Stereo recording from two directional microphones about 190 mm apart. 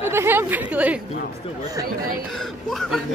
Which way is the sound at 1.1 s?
35° left (ahead or behind).